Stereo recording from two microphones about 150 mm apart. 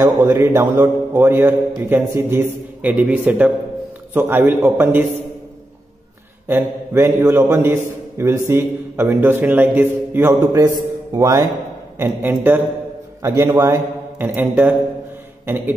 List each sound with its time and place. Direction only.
0.0 s a man's voice: 20° right (ahead or behind)
6.4 s a man's voice: 15° right (ahead or behind)
12.0 s a man's voice: 15° right (ahead or behind)